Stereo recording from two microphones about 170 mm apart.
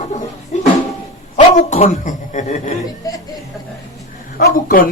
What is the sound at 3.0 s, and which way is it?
Chuckle, 20° left (ahead or behind).